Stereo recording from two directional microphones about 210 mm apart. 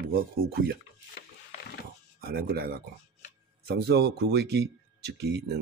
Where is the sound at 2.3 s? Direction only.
45° right (ahead or behind).